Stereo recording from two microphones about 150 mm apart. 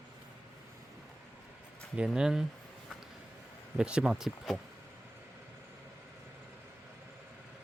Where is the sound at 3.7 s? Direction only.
5° right (ahead or behind).